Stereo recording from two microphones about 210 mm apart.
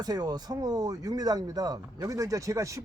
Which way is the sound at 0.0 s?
20° right (ahead or behind).